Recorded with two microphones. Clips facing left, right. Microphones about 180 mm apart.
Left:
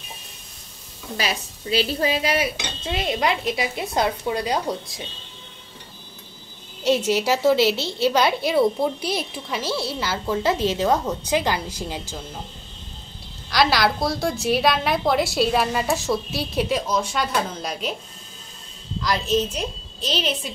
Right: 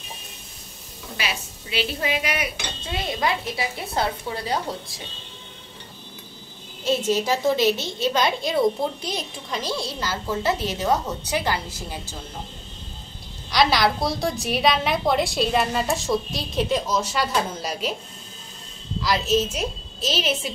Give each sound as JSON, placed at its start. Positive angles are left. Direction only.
{"t": 1.1, "sound": "dishes", "side_deg": 40}
{"t": 7.1, "sound": "a woman's voice", "side_deg": 10}
{"t": 13.5, "sound": "a woman's voice", "side_deg": 0}
{"t": 19.0, "sound": "a woman's voice", "side_deg": -5}